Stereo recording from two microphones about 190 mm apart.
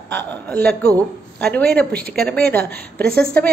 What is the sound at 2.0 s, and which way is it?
Speech, 50° right (ahead or behind).